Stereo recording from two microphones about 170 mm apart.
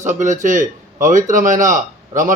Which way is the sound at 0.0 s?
45° right (ahead or behind).